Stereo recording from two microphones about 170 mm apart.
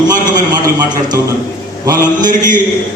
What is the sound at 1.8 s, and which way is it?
Speech, 20° right (ahead or behind).